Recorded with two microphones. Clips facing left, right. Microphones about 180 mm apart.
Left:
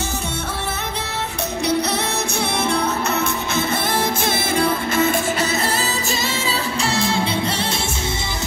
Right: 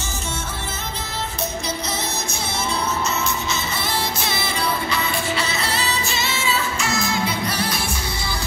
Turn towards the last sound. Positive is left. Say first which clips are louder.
# left 1 dB
turn(degrees=25)  # may be behind; listen again after turning